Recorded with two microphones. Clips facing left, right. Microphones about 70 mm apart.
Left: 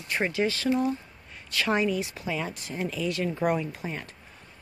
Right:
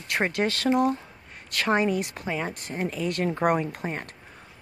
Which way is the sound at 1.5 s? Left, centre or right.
Right.